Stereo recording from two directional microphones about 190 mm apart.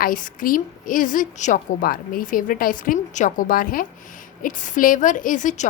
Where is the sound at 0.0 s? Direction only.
45° left (ahead or behind).